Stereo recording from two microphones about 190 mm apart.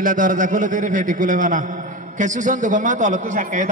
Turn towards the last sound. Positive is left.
turn(degrees=-40)  # may be behind; listen again after turning